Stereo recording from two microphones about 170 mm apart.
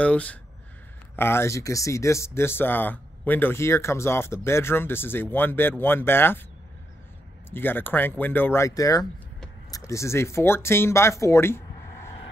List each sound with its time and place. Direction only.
0.0 s speech: 5° left (ahead or behind)
7.5 s speech: 10° left (ahead or behind)